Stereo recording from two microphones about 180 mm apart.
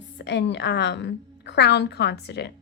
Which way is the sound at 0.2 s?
80° left.